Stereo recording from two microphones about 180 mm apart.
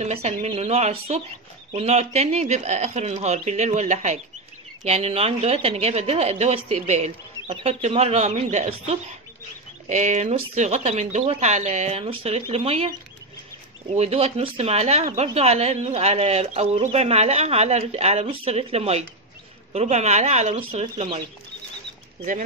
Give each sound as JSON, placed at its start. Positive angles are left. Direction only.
{"t": 0.0, "sound": "speech", "side_deg": -35}
{"t": 13.9, "sound": "speech", "side_deg": -35}